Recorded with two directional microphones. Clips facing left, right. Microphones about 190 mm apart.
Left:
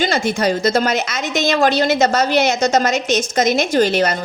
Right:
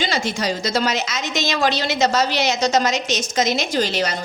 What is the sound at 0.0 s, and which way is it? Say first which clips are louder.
A woman's voice: left 5 dB; 50° left (ahead or behind).